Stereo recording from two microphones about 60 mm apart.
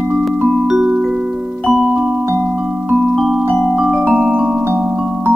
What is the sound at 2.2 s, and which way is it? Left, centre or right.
Music, right.